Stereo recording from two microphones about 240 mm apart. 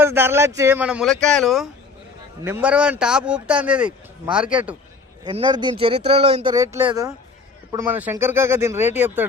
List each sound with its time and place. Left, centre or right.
0.0 s speech: centre
5.2 s speech: centre